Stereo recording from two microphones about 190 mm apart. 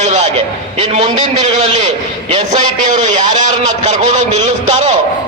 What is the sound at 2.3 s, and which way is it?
A man's voice, 40° right (ahead or behind).